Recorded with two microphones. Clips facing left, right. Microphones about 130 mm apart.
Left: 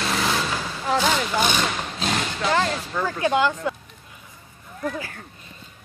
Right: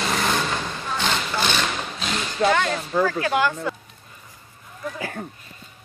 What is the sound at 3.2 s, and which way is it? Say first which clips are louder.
Speech: left 1 dB; 20° left (ahead or behind).